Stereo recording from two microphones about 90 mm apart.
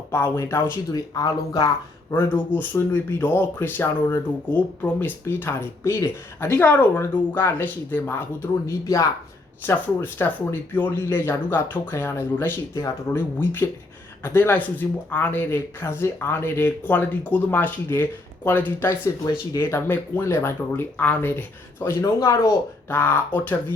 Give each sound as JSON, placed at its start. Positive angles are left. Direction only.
{"t": 0.1, "sound": "speech", "side_deg": 30}
{"t": 0.9, "sound": "speech", "side_deg": 45}
{"t": 2.0, "sound": "speech", "side_deg": 25}
{"t": 9.6, "sound": "speech", "side_deg": 25}
{"t": 22.0, "sound": "speech", "side_deg": 35}